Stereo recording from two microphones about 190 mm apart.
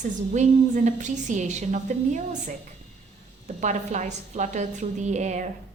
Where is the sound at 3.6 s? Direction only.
40° right (ahead or behind).